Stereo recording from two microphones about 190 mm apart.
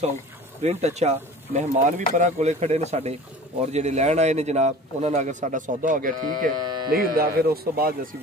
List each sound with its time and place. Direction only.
0.6 s a man's voice: 35° right (ahead or behind)